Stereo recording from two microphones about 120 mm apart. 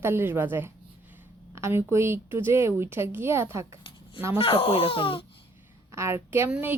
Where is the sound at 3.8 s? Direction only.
45° left (ahead or behind).